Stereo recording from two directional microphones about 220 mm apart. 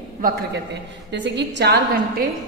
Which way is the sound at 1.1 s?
55° right (ahead or behind).